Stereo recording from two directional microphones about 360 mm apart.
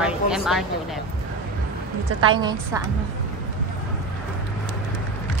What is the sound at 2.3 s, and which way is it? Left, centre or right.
Speech, centre.